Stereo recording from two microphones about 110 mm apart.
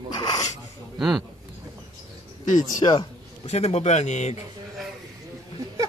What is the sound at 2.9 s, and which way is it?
A man's voice, 70° left (ahead or behind).